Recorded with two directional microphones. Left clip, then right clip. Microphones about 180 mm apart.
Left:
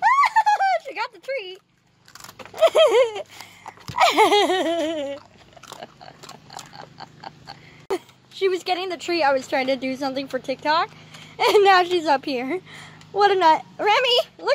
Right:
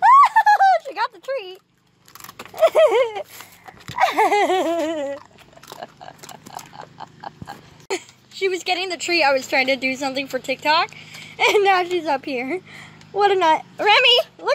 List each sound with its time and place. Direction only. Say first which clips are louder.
0.0 s a sound: right 5 dB; centre (ahead or behind)
2.5 s a sound: right 1 dB; 15° left (ahead or behind)
4.0 s a sound: left 1 dB; 35° left (ahead or behind)
4.3 s a child's voice: even; 20° left (ahead or behind)
4.6 s laughter: right 2 dB; centre (ahead or behind)
5.8 s pig: right 3 dB; 5° left (ahead or behind)
7.9 s speech: even; 20° left (ahead or behind)
11.4 s a child's voice: left 1 dB; 20° left (ahead or behind)
12.4 s speech: right 1 dB; 5° left (ahead or behind)